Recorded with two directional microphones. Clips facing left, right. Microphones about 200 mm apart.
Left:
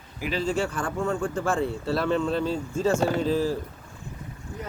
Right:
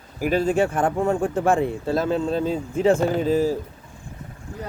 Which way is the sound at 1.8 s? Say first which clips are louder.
Right 2 dB; 50° right (ahead or behind).